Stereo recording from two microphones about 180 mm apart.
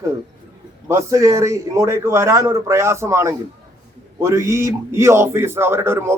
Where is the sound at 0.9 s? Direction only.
15° right (ahead or behind).